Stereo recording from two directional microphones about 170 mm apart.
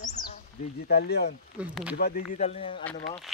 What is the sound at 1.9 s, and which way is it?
Speech, 60° left (ahead or behind).